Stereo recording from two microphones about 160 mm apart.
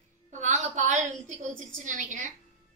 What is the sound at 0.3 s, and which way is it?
A woman's voice, 50° right (ahead or behind).